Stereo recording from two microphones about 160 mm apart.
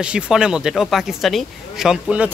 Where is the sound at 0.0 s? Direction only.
5° right (ahead or behind).